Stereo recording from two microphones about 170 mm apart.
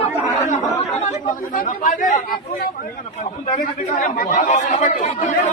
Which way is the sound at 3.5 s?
55° left (ahead or behind).